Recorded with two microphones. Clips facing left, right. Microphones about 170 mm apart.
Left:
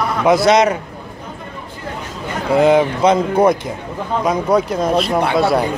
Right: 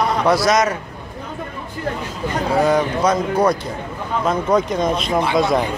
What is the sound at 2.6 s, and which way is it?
Speech, 25° left (ahead or behind).